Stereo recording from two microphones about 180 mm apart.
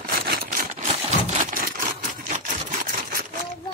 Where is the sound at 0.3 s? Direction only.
55° right (ahead or behind).